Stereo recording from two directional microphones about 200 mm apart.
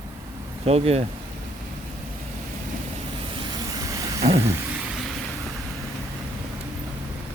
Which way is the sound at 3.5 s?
20° right (ahead or behind).